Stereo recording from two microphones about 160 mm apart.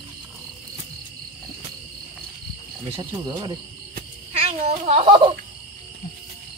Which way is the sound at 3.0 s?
25° right (ahead or behind).